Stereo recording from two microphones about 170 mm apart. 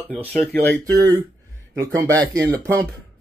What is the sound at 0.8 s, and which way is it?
Speech, 20° right (ahead or behind).